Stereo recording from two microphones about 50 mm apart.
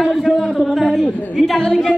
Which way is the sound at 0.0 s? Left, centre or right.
Centre.